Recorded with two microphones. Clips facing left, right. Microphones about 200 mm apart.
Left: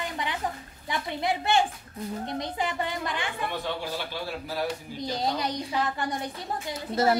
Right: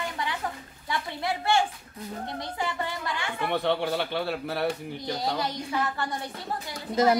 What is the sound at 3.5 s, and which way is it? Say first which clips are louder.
A man's voice: right 6 dB; 65° right (ahead or behind).